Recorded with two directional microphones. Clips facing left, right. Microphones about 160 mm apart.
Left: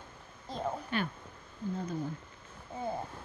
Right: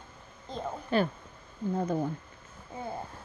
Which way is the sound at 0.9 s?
35° right (ahead or behind).